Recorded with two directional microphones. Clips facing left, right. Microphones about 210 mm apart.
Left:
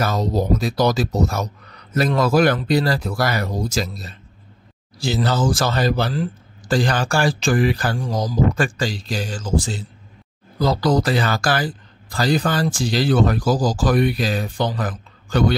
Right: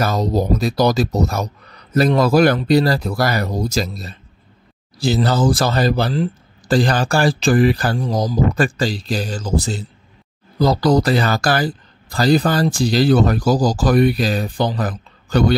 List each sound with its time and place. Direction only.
0.0 s a man's voice: 40° right (ahead or behind)